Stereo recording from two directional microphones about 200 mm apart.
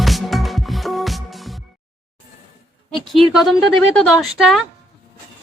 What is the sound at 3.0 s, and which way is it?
Speech, centre (ahead or behind).